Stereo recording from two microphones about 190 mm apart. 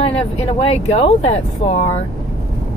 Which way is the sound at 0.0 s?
30° left (ahead or behind).